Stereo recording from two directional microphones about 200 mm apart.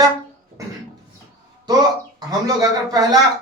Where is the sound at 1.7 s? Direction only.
20° right (ahead or behind).